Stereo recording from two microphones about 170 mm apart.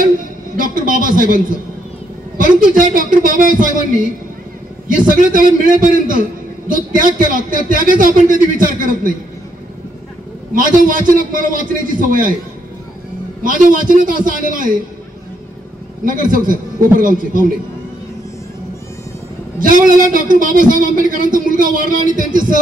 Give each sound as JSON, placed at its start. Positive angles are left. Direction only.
{"t": 0.6, "sound": "a man's voice", "side_deg": -55}
{"t": 10.5, "sound": "a man's voice", "side_deg": -55}
{"t": 13.4, "sound": "a man's voice", "side_deg": -55}
{"t": 16.1, "sound": "a man's voice", "side_deg": -55}
{"t": 19.6, "sound": "a man's voice", "side_deg": -55}